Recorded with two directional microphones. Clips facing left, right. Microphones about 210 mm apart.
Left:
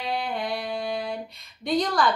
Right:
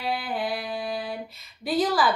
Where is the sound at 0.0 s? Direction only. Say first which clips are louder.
Even; 5° right (ahead or behind).